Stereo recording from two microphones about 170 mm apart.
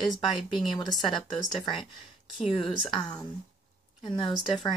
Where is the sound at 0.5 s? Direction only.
25° left (ahead or behind).